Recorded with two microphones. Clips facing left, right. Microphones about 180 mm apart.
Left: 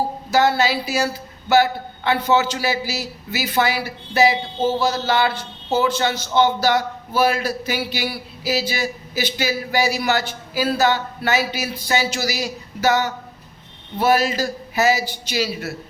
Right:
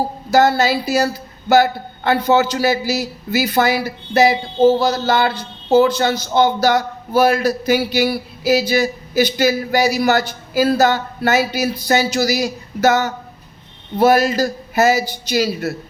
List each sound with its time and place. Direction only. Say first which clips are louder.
0.3 s a man's voice: right 4 dB; 40° right (ahead or behind)